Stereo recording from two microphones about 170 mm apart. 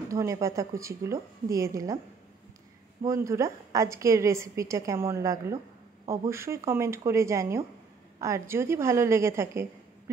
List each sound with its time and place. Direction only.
0.1 s a woman's voice: 20° right (ahead or behind)
3.0 s a woman's voice: 20° right (ahead or behind)